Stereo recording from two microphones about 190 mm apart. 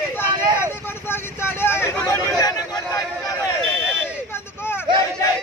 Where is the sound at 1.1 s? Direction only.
10° left (ahead or behind).